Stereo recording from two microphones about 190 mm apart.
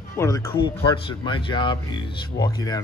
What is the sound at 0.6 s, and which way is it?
Speech, 25° left (ahead or behind).